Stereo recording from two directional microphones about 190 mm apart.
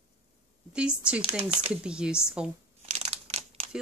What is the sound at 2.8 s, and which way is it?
Crumpling, 35° right (ahead or behind).